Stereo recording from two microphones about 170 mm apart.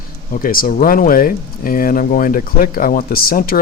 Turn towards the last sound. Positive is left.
turn(degrees=60)  # may be behind; listen again after turning